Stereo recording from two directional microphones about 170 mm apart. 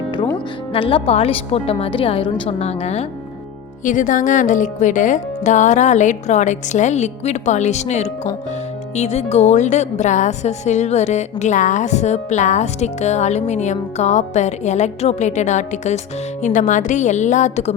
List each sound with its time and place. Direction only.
0.7 s a woman's voice: 30° left (ahead or behind)
3.8 s a woman's voice: 50° left (ahead or behind)